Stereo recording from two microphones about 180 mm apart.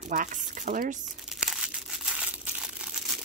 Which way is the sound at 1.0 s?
Centre (ahead or behind).